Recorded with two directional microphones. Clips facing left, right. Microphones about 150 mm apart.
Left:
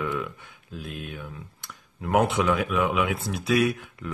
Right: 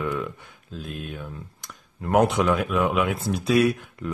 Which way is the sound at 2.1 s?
Centre (ahead or behind).